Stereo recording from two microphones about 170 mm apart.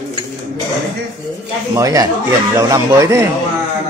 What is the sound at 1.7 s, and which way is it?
A man's voice, 20° right (ahead or behind).